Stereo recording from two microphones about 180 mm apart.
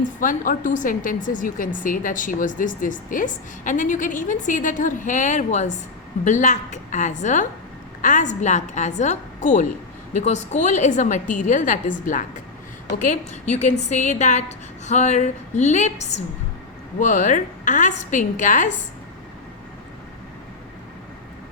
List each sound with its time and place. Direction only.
0.2 s a woman's voice: 45° left (ahead or behind)
13.5 s a woman's voice: 40° left (ahead or behind)